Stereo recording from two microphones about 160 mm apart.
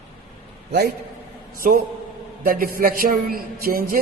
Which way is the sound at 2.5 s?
65° right (ahead or behind).